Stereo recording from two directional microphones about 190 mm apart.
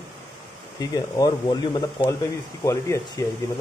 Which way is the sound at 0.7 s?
20° left (ahead or behind).